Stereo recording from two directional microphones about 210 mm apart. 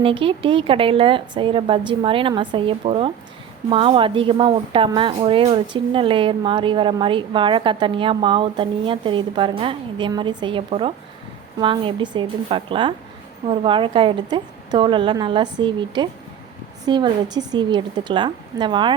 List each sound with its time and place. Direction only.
0.0 s a woman's voice: 25° right (ahead or behind)